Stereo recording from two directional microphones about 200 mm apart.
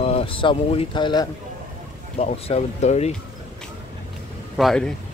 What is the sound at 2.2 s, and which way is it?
Speech, 30° left (ahead or behind).